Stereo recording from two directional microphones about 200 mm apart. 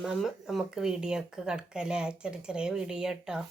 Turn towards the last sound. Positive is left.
turn(degrees=-5)  # may be behind; listen again after turning